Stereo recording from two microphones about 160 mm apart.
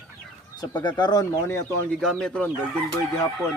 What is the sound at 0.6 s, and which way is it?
Speech, 25° left (ahead or behind).